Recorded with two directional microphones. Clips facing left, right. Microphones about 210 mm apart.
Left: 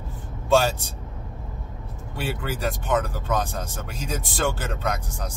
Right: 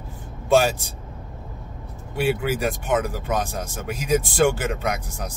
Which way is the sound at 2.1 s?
10° right (ahead or behind).